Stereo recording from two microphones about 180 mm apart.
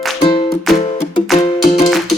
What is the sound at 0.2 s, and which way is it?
Music, 30° left (ahead or behind).